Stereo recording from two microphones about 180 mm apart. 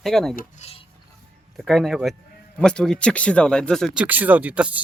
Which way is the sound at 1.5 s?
Centre (ahead or behind).